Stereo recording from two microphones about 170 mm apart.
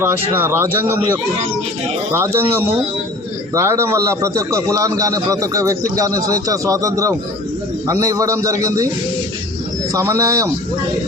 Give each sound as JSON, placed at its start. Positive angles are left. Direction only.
{"t": 0.0, "sound": "a man's voice", "side_deg": -15}
{"t": 9.9, "sound": "a man's voice", "side_deg": -20}